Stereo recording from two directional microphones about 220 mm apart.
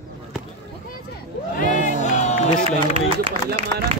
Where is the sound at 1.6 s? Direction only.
35° left (ahead or behind).